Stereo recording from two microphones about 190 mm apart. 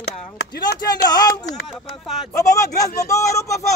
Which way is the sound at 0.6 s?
20° left (ahead or behind).